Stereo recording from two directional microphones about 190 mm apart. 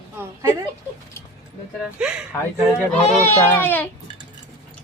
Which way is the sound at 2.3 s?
10° left (ahead or behind).